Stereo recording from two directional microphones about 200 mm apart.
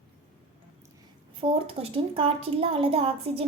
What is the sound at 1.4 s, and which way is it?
A woman's voice, 30° right (ahead or behind).